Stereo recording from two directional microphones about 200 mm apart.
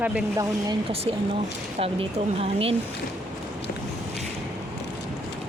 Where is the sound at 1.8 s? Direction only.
30° right (ahead or behind).